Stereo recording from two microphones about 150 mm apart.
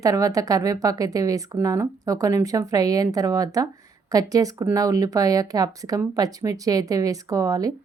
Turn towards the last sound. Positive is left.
turn(degrees=-20)  # may be behind; listen again after turning